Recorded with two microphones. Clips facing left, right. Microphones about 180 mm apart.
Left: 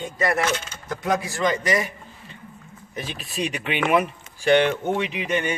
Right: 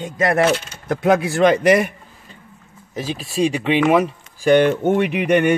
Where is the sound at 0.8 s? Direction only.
60° right (ahead or behind).